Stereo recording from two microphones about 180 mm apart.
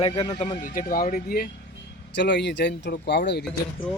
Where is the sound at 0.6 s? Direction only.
50° left (ahead or behind).